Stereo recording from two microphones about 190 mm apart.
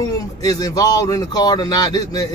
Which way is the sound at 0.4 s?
20° left (ahead or behind).